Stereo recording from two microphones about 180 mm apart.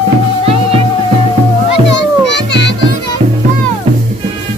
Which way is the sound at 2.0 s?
75° left (ahead or behind).